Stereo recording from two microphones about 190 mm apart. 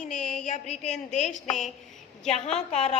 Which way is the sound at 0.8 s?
40° left (ahead or behind).